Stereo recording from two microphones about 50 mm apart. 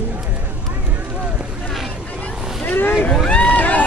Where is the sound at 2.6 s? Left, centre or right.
Left.